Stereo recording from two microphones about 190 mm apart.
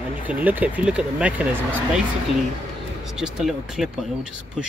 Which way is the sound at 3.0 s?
5° right (ahead or behind).